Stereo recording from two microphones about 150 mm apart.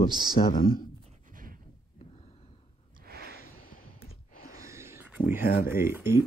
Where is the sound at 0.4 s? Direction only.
40° left (ahead or behind).